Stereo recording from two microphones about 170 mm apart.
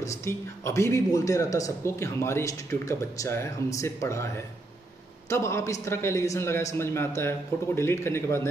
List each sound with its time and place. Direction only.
0.0 s speech: 15° left (ahead or behind)
5.3 s speech: 15° left (ahead or behind)